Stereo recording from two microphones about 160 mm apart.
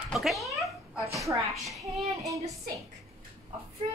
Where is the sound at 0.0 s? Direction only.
Centre (ahead or behind).